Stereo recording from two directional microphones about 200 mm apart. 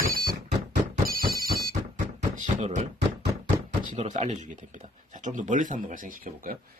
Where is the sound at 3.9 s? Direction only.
35° right (ahead or behind).